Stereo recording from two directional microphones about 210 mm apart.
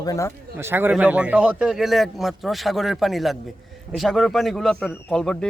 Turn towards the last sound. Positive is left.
turn(degrees=5)  # may be behind; listen again after turning